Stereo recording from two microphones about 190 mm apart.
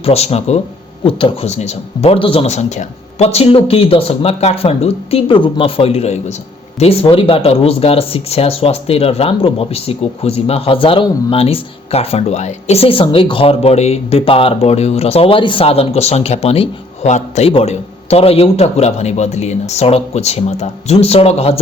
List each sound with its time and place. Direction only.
0.0 s speech: 30° left (ahead or behind)